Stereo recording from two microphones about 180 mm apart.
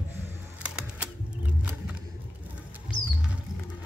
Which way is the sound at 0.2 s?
5° right (ahead or behind).